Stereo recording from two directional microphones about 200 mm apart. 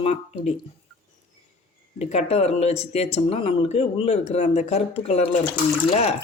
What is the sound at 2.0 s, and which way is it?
Speech, 30° left (ahead or behind).